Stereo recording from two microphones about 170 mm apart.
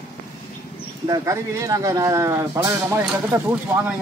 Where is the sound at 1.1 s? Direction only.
20° right (ahead or behind).